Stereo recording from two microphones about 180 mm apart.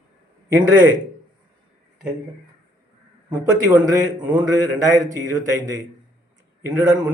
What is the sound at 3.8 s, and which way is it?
Speech, 20° right (ahead or behind).